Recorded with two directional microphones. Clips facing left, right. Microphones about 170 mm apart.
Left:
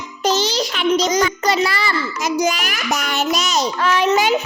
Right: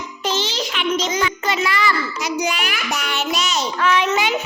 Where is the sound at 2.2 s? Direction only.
40° left (ahead or behind).